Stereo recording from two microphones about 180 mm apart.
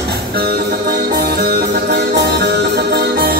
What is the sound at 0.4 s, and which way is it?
Music, 60° right (ahead or behind).